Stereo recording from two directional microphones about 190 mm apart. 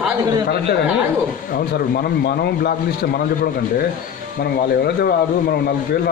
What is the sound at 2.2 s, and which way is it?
Speech, 55° left (ahead or behind).